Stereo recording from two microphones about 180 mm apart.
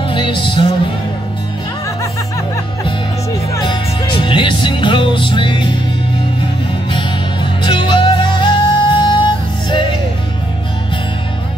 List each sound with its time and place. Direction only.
0.0 s music: 25° left (ahead or behind)
3.5 s music: 25° left (ahead or behind)
7.6 s music: 25° left (ahead or behind)